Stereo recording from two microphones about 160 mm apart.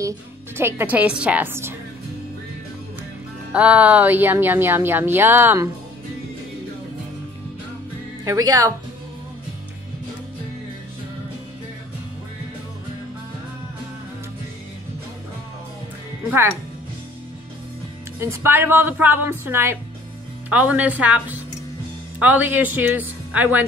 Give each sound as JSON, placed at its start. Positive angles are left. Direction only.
{"t": 0.6, "sound": "a woman's voice", "side_deg": -15}
{"t": 3.5, "sound": "a woman's voice", "side_deg": -10}
{"t": 8.3, "sound": "speech", "side_deg": -20}
{"t": 16.3, "sound": "a woman's voice", "side_deg": -10}
{"t": 18.2, "sound": "a woman's voice", "side_deg": -15}